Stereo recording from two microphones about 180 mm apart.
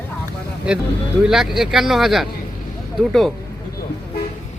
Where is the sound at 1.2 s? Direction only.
5° right (ahead or behind).